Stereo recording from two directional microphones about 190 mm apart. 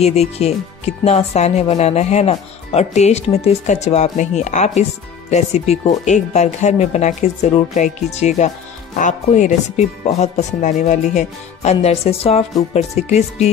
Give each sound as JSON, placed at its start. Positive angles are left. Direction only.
{"t": 0.0, "sound": "speech", "side_deg": 35}